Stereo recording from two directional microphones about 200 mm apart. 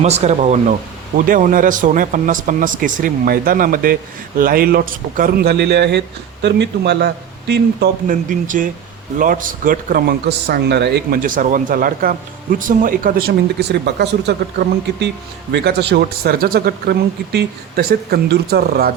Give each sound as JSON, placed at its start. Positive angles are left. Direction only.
{"t": 0.0, "sound": "a man's voice", "side_deg": -35}
{"t": 15.5, "sound": "speech", "side_deg": -55}